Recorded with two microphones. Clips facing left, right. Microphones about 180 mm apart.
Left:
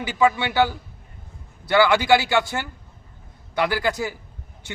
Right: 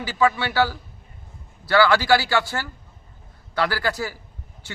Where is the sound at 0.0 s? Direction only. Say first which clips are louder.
Left 1 dB; 20° left (ahead or behind).